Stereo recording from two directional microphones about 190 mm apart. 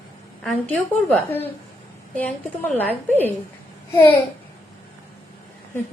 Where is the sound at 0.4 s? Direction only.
5° left (ahead or behind).